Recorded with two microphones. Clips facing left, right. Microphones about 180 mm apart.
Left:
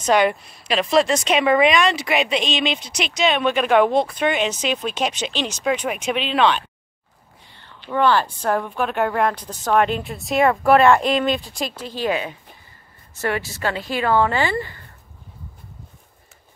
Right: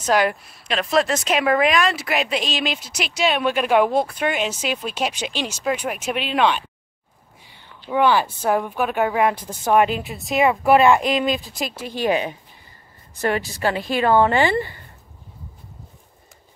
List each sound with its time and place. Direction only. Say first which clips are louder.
0.0 s speech: left 2 dB; 5° right (ahead or behind)
7.9 s a woman's voice: even; 10° right (ahead or behind)
11.9 s a woman's voice: right 3 dB; 20° right (ahead or behind)
13.6 s a woman's voice: right 3 dB; 15° right (ahead or behind)